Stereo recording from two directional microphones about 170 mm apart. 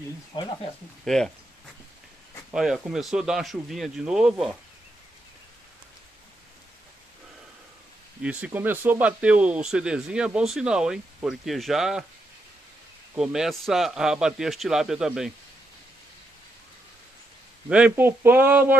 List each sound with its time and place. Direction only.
0.3 s speech: 25° left (ahead or behind)
1.0 s speech: centre (ahead or behind)
2.5 s speech: 5° right (ahead or behind)
8.2 s speech: 5° right (ahead or behind)
13.1 s speech: 5° right (ahead or behind)
17.6 s speech: 5° right (ahead or behind)